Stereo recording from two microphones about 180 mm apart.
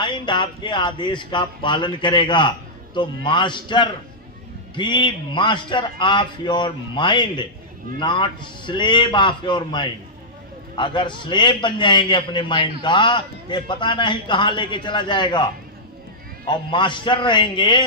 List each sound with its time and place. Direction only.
0.0 s a man's voice: 25° left (ahead or behind)
16.5 s a man's voice: 25° left (ahead or behind)